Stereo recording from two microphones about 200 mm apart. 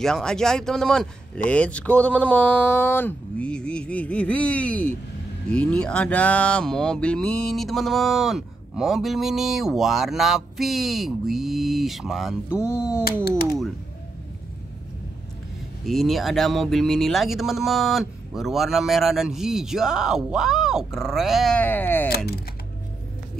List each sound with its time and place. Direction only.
0.0 s speech: 5° left (ahead or behind)
12.4 s speech: 15° left (ahead or behind)
15.8 s speech: centre (ahead or behind)
22.1 s speech: 50° left (ahead or behind)